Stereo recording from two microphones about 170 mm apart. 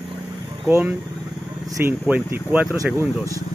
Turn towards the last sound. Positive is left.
turn(degrees=-15)  # may be behind; listen again after turning